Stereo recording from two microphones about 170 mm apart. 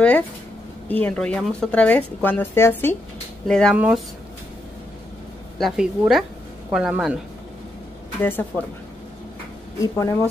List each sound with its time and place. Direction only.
0.8 s a woman's voice: 10° left (ahead or behind)
3.7 s speech: 10° right (ahead or behind)
5.6 s a woman's voice: centre (ahead or behind)
8.2 s a woman's voice: 10° left (ahead or behind)
9.8 s speech: 20° left (ahead or behind)